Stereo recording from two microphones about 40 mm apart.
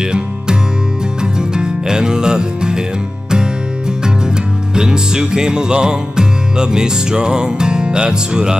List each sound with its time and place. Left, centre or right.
1.5 s music: centre
4.7 s music: centre